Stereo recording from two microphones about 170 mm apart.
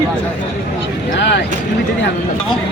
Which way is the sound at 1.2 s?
90° left.